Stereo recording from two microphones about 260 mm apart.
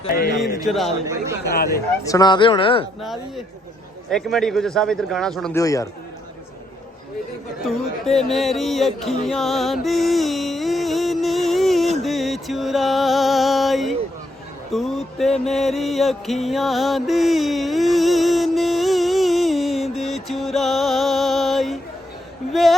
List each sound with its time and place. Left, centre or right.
0.1 s speech: left
0.6 s speech: centre
1.5 s speech: left
2.0 s speech: centre
3.0 s speech: centre
5.5 s a man's voice: centre
7.7 s music: centre